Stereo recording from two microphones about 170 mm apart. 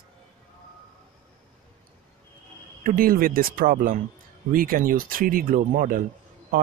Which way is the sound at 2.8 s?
55° right (ahead or behind).